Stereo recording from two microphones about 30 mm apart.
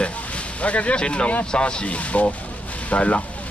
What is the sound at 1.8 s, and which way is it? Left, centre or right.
Speech, left.